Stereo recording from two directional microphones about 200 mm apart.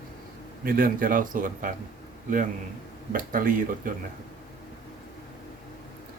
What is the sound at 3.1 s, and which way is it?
Speech, 45° right (ahead or behind).